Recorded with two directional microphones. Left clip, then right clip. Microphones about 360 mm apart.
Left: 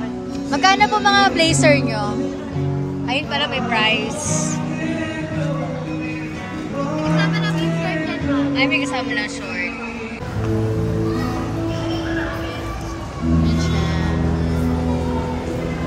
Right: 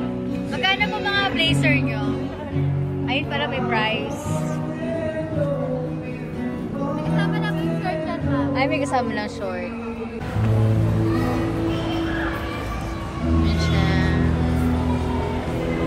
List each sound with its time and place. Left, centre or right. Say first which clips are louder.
0.5 s speech: left 7 dB; centre
3.1 s speech: left 3 dB; centre
7.2 s music: left 3 dB; right
8.5 s speech: even; centre
13.5 s music: even; centre